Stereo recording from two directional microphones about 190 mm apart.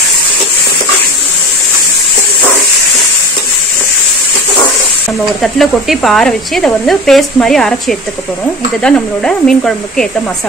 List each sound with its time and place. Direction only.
5.4 s speech: centre (ahead or behind)
8.8 s speech: 5° left (ahead or behind)